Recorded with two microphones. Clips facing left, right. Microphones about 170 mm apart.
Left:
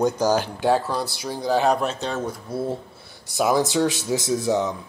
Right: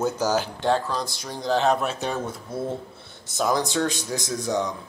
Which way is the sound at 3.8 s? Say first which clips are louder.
Left 5 dB; 20° right (ahead or behind).